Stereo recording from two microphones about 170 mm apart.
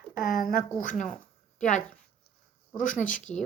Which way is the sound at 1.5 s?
45° left (ahead or behind).